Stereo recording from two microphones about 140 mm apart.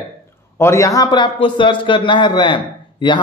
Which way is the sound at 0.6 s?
20° left (ahead or behind).